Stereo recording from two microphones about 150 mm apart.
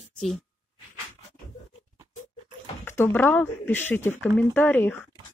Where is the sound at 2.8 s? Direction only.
15° left (ahead or behind).